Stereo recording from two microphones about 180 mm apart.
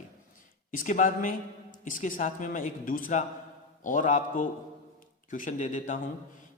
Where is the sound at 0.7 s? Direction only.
45° left (ahead or behind).